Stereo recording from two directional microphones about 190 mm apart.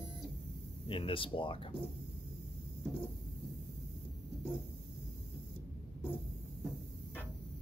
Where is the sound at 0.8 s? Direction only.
30° left (ahead or behind).